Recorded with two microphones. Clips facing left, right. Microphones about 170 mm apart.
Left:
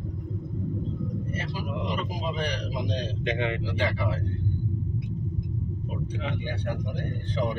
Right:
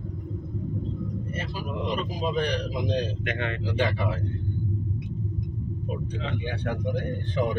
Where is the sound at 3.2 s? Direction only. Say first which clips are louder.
Left 3 dB; 15° left (ahead or behind).